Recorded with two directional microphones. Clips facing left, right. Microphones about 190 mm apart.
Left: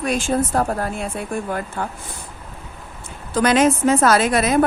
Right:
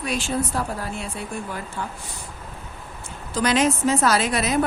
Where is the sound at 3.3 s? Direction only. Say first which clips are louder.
Left 5 dB; 55° left (ahead or behind).